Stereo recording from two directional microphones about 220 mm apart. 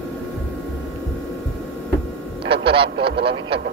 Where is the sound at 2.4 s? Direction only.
25° right (ahead or behind).